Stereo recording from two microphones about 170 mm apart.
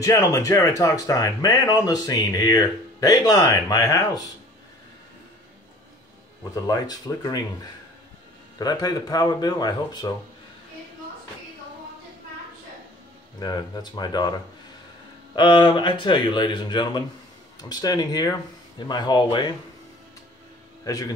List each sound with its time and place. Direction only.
0.0 s speech: 15° left (ahead or behind)
6.5 s speech: 20° left (ahead or behind)
8.5 s speech: 20° left (ahead or behind)
13.4 s speech: 25° left (ahead or behind)
15.3 s speech: 25° left (ahead or behind)
20.8 s speech: 20° left (ahead or behind)